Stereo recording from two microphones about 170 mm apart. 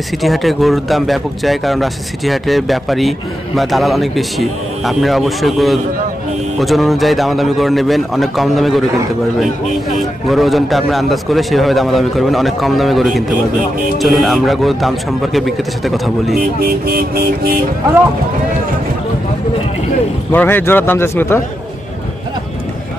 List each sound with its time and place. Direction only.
0.2 s speech: centre (ahead or behind)
16.6 s music: 60° right (ahead or behind)
20.3 s a man's voice: 10° left (ahead or behind)